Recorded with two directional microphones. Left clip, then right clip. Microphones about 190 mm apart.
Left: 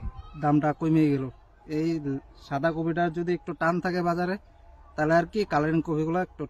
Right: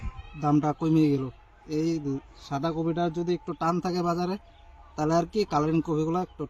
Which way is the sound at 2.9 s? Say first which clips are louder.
Left 1 dB; 30° left (ahead or behind).